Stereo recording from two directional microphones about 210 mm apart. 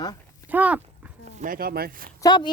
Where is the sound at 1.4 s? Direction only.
45° right (ahead or behind).